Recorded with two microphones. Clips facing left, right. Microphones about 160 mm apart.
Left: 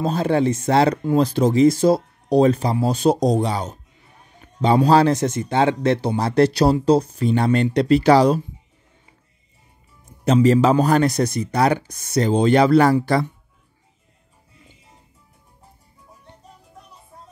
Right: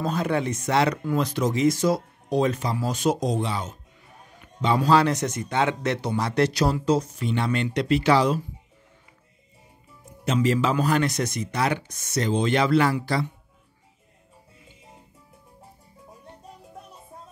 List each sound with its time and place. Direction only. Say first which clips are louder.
0.0 s speech: left 6 dB; 30° left (ahead or behind)
10.2 s speech: left 8 dB; 40° left (ahead or behind)